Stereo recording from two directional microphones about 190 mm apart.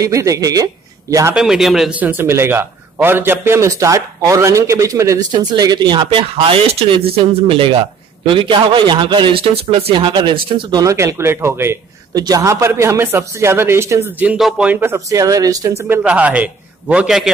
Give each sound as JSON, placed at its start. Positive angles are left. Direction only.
{"t": 0.0, "sound": "a man's voice", "side_deg": -15}
{"t": 1.3, "sound": "a man's voice", "side_deg": 0}
{"t": 15.9, "sound": "a man's voice", "side_deg": -5}